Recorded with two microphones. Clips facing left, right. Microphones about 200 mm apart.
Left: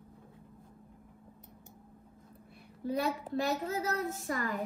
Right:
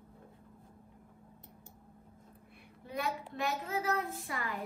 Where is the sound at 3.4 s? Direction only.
40° left (ahead or behind).